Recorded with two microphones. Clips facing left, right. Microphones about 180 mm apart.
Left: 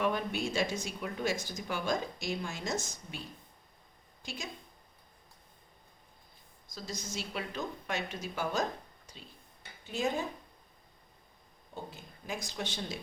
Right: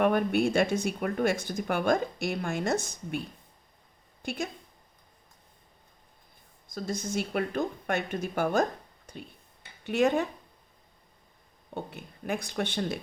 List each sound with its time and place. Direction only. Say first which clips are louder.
0.0 s speech: right 8 dB; 55° right (ahead or behind)
4.2 s a woman's voice: right 11 dB; 55° right (ahead or behind)
6.7 s speech: right 9 dB; 55° right (ahead or behind)
9.8 s speech: right 8 dB; 70° right (ahead or behind)
11.7 s speech: right 6 dB; 60° right (ahead or behind)